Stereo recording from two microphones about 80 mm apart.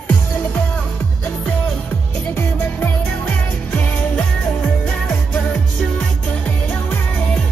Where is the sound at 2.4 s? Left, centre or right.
Left.